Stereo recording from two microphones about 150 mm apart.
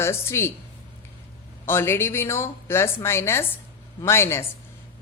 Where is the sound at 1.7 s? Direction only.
15° left (ahead or behind).